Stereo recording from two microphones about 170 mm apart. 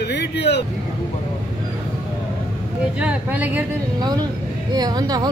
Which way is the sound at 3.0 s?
10° right (ahead or behind).